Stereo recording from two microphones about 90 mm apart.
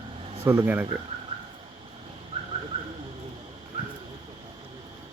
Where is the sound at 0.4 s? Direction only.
25° right (ahead or behind).